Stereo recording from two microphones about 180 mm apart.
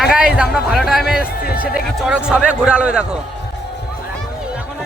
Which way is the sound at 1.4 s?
55° left (ahead or behind).